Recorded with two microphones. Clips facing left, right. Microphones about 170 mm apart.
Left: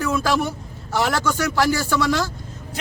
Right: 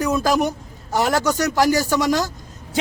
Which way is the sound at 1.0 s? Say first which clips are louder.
Right 3 dB; 40° right (ahead or behind).